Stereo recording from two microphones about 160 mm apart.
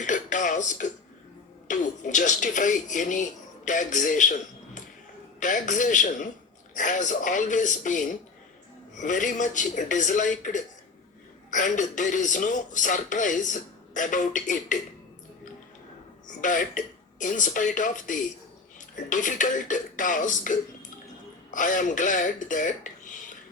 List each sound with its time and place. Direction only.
0.0 s throat clearing: 50° left (ahead or behind)
1.6 s speech: 50° left (ahead or behind)
16.4 s speech: 55° left (ahead or behind)